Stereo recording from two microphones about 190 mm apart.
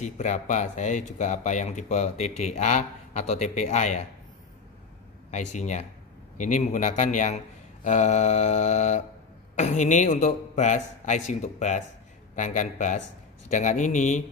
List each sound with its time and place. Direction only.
0.0 s speech: 40° left (ahead or behind)
5.3 s speech: 40° left (ahead or behind)